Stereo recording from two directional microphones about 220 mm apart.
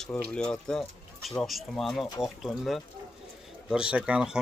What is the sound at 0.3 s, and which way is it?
Speech, 5° left (ahead or behind).